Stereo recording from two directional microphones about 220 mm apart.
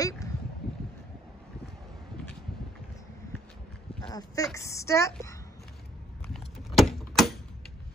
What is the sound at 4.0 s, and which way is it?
A woman's voice, 15° left (ahead or behind).